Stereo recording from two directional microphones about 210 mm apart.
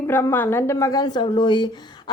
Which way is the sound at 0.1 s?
10° left (ahead or behind).